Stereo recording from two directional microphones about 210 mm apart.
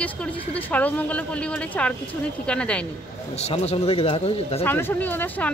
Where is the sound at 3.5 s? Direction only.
30° left (ahead or behind).